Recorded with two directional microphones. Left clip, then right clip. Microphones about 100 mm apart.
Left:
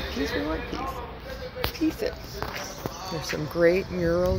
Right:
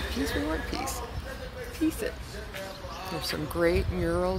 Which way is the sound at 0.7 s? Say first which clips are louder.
Left 1 dB; 55° right (ahead or behind).